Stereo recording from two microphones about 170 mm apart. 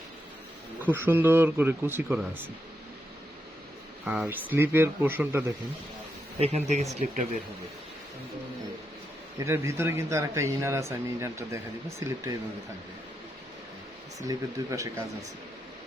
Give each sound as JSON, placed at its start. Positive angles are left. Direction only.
{"t": 0.9, "sound": "speech", "side_deg": -10}
{"t": 4.0, "sound": "speech", "side_deg": -5}
{"t": 6.4, "sound": "speech", "side_deg": -40}
{"t": 9.4, "sound": "speech", "side_deg": -15}
{"t": 14.2, "sound": "speech", "side_deg": -20}